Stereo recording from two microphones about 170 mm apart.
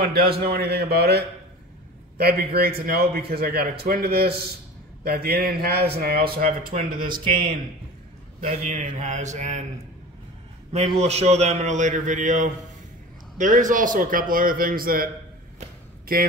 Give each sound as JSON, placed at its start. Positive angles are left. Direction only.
{"t": 0.3, "sound": "a man's voice", "side_deg": -65}
{"t": 8.5, "sound": "speech", "side_deg": -45}
{"t": 10.7, "sound": "a man's voice", "side_deg": -40}